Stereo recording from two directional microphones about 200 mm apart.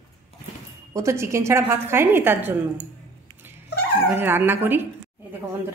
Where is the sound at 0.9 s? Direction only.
15° right (ahead or behind).